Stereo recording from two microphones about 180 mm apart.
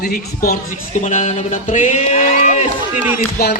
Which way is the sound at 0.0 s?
55° left (ahead or behind).